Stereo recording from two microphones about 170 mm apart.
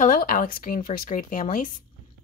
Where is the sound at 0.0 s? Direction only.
55° left (ahead or behind).